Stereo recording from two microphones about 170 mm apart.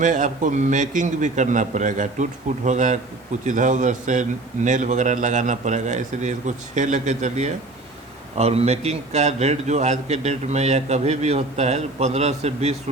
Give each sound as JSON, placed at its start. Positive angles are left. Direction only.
{"t": 0.0, "sound": "a man's voice", "side_deg": -50}